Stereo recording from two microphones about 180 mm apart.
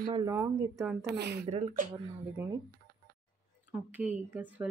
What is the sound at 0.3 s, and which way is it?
Speech, 15° right (ahead or behind).